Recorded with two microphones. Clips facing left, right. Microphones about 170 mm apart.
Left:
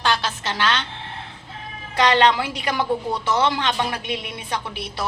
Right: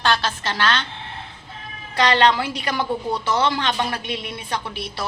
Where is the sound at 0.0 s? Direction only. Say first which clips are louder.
Right 1 dB; 15° left (ahead or behind).